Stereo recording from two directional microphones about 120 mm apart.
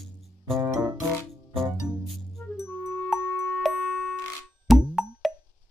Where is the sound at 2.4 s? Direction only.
15° left (ahead or behind).